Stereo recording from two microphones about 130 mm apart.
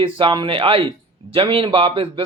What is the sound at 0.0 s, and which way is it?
Speech, 40° right (ahead or behind).